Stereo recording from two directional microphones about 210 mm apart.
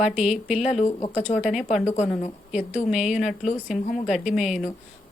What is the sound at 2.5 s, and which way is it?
A woman's voice, 5° right (ahead or behind).